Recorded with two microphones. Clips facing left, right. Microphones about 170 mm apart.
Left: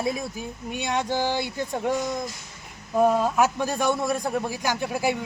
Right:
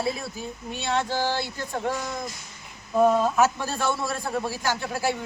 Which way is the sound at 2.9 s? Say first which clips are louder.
Even; 10° left (ahead or behind).